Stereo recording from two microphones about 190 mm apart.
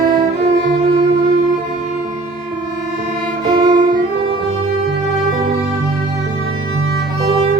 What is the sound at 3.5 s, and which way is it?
Violin, 25° right (ahead or behind).